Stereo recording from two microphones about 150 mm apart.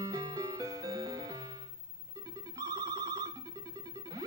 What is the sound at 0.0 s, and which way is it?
Music, 25° right (ahead or behind).